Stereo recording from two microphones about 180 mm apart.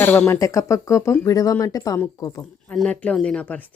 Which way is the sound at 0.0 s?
10° left (ahead or behind).